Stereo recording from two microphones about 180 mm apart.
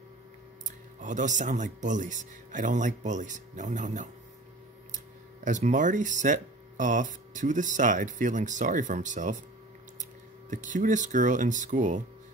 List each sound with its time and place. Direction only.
1.0 s speech: 45° right (ahead or behind)
10.5 s speech: 45° right (ahead or behind)